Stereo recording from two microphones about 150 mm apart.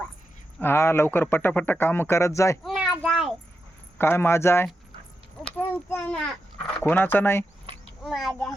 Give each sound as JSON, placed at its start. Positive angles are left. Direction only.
{"t": 0.6, "sound": "speech", "side_deg": 15}
{"t": 2.6, "sound": "speech", "side_deg": 0}
{"t": 3.9, "sound": "a child's voice", "side_deg": 15}
{"t": 7.7, "sound": "a sound", "side_deg": -40}
{"t": 8.0, "sound": "a child's voice", "side_deg": 0}